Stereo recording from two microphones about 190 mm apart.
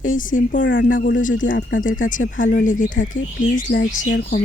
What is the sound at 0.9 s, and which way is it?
Speech, 45° left (ahead or behind).